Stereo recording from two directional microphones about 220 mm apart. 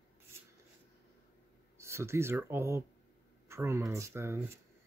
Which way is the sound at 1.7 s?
10° right (ahead or behind).